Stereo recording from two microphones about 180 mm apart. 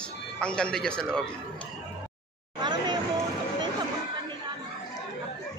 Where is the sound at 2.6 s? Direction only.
25° right (ahead or behind).